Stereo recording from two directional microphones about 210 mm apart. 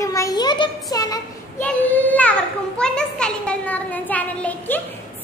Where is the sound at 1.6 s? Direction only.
5° left (ahead or behind).